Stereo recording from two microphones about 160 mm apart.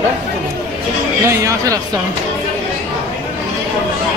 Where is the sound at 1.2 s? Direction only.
20° right (ahead or behind).